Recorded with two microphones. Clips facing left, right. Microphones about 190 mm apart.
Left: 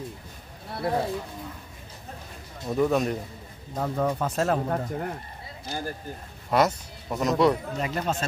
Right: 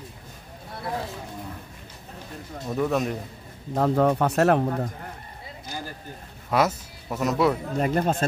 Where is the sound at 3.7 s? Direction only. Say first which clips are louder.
Right 6 dB; 65° right (ahead or behind).